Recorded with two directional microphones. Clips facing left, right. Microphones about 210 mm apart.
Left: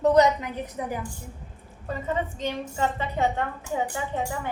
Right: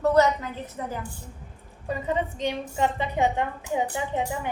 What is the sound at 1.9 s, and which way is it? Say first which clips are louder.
A woman's voice: right 1 dB; 15° right (ahead or behind).